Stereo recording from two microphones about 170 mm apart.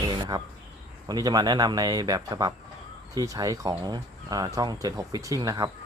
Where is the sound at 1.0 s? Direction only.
25° right (ahead or behind).